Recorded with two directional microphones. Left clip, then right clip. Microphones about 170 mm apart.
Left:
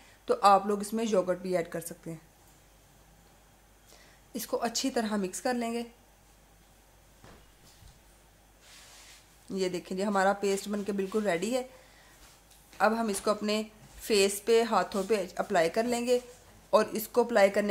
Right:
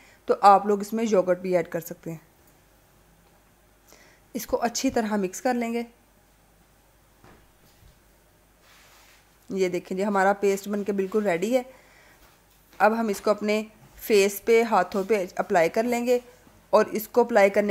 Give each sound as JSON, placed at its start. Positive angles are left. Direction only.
{"t": 0.2, "sound": "a woman's voice", "side_deg": -35}
{"t": 3.9, "sound": "a woman's voice", "side_deg": -35}
{"t": 9.5, "sound": "a woman's voice", "side_deg": -35}
{"t": 12.7, "sound": "a woman's voice", "side_deg": -30}